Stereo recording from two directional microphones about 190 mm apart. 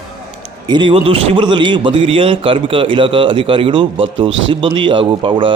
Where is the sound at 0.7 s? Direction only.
25° right (ahead or behind).